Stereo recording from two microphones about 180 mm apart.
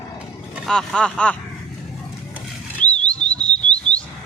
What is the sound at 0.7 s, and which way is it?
Speech, 5° left (ahead or behind).